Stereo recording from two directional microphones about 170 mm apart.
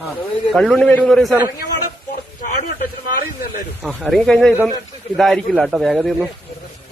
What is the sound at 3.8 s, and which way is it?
A man's voice, centre (ahead or behind).